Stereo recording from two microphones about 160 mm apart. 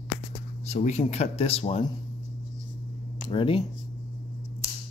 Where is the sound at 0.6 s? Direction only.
45° left (ahead or behind).